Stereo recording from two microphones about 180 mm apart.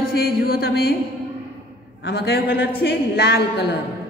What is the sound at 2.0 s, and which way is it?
A woman's voice, 65° left (ahead or behind).